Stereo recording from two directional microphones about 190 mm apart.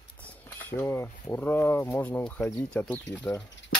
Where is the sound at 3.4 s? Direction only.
70° left (ahead or behind).